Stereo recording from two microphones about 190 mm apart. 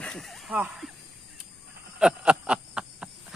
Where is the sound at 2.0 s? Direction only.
5° right (ahead or behind).